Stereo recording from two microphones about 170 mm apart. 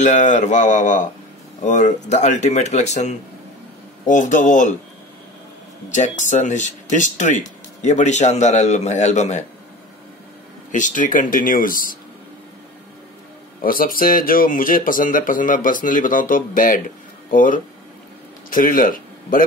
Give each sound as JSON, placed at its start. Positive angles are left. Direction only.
{"t": 0.0, "sound": "speech", "side_deg": 45}
{"t": 5.9, "sound": "speech", "side_deg": 45}
{"t": 10.7, "sound": "speech", "side_deg": 50}
{"t": 13.6, "sound": "speech", "side_deg": 55}